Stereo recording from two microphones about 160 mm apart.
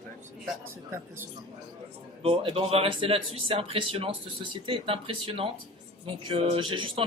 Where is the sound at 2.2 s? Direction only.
35° right (ahead or behind).